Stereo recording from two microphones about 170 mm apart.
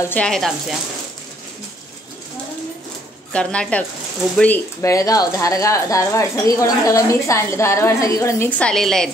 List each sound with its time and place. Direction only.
0.1 s speech: 5° left (ahead or behind)
3.3 s speech: 5° left (ahead or behind)